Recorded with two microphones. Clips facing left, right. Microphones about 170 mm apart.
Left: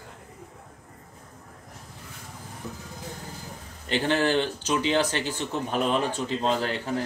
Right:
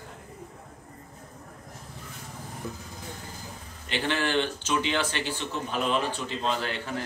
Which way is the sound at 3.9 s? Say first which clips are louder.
Left 4 dB; 40° left (ahead or behind).